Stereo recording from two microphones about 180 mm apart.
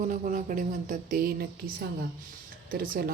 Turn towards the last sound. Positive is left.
turn(degrees=-55)  # may be behind; listen again after turning